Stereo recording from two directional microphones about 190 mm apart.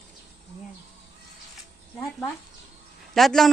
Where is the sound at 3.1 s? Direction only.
Centre (ahead or behind).